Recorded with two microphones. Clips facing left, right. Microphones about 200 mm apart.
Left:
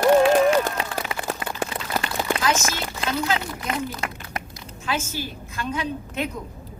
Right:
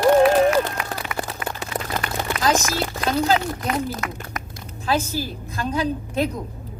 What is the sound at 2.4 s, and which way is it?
A woman's voice, 35° right (ahead or behind).